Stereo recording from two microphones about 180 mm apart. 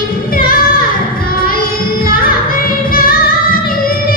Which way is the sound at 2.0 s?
55° left (ahead or behind).